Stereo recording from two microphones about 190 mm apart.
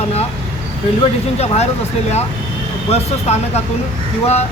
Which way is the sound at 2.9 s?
35° left (ahead or behind).